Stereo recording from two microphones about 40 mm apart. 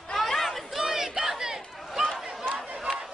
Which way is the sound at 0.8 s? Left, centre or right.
Centre.